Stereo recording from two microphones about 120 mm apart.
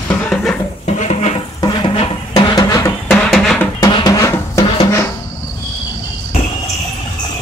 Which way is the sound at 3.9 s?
30° left (ahead or behind).